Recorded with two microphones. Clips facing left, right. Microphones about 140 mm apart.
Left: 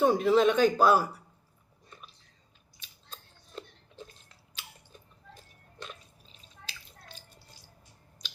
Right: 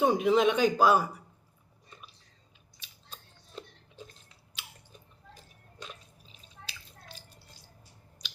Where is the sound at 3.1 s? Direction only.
10° right (ahead or behind).